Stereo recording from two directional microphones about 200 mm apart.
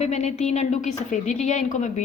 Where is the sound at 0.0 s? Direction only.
35° left (ahead or behind).